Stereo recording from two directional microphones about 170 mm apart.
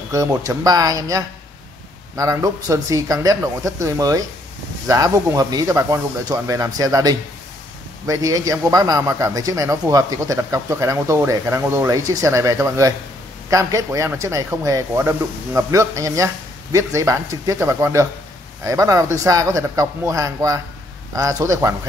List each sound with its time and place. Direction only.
0.1 s a man's voice: 20° right (ahead or behind)